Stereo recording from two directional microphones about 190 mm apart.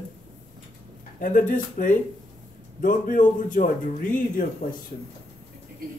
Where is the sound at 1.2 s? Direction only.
45° left (ahead or behind).